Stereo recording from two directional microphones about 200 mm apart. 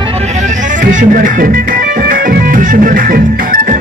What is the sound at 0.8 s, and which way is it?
Music, 40° right (ahead or behind).